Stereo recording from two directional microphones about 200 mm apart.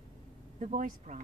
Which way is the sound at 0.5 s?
40° right (ahead or behind).